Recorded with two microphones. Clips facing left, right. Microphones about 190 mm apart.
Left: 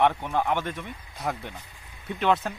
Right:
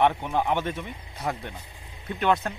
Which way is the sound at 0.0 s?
10° right (ahead or behind).